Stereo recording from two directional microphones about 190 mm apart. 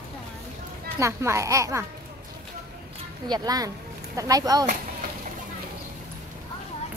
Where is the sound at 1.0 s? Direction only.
15° right (ahead or behind).